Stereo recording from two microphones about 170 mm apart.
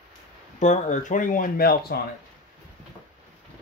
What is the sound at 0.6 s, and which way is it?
Speech, 45° left (ahead or behind).